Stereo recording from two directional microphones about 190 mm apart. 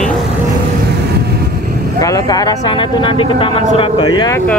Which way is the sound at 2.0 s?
20° left (ahead or behind).